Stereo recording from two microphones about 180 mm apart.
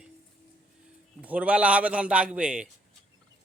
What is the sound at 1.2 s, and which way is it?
A man's voice, 10° right (ahead or behind).